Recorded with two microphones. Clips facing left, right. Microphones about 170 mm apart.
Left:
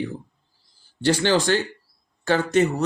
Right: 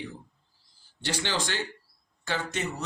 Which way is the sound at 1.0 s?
45° left (ahead or behind).